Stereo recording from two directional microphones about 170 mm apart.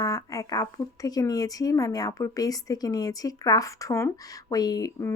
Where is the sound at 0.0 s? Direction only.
20° left (ahead or behind).